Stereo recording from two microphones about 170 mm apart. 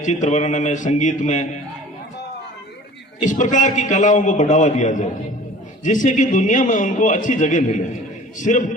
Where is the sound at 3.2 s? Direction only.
50° left (ahead or behind).